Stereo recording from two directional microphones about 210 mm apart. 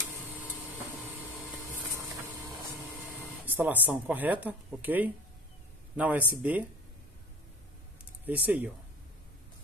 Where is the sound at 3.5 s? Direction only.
10° right (ahead or behind).